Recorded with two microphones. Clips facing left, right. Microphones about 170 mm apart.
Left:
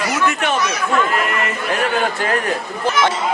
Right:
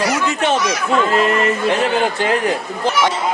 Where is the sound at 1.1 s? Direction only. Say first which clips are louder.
Right 5 dB; 25° right (ahead or behind).